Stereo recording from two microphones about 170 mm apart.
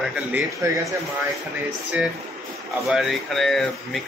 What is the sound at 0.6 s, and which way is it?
Speech, 20° right (ahead or behind).